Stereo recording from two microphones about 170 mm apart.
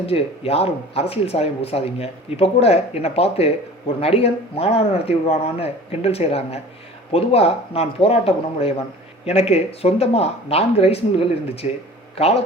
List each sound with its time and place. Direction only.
0.0 s speech: 35° left (ahead or behind)